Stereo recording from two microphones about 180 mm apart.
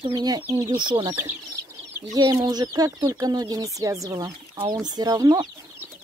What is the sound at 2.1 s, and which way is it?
Speech, 20° right (ahead or behind).